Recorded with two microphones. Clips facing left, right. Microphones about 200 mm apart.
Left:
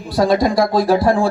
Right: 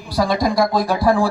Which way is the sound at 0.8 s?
25° left (ahead or behind).